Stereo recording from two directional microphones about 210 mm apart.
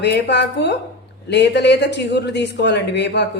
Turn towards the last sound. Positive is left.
turn(degrees=55)  # may be behind; listen again after turning